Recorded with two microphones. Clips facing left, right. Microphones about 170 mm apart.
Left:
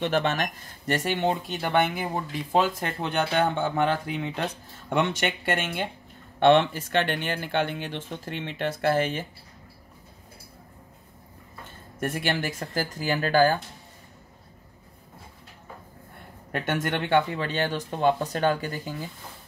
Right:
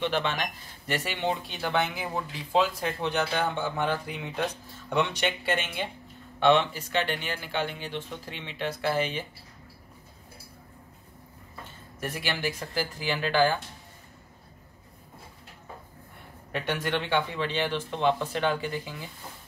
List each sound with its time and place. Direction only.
0.0 s speech: 45° left (ahead or behind)
12.0 s speech: 50° left (ahead or behind)
16.5 s speech: 45° left (ahead or behind)